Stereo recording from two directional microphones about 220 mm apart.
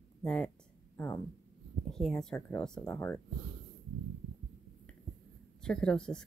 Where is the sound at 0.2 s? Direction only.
5° left (ahead or behind).